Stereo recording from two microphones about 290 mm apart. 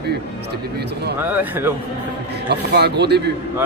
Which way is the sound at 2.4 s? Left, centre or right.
Right.